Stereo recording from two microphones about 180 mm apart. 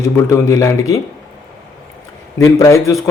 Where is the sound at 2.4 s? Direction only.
15° left (ahead or behind).